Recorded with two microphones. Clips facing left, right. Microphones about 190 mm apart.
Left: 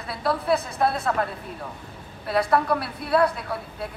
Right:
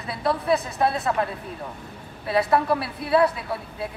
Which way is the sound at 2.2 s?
Centre (ahead or behind).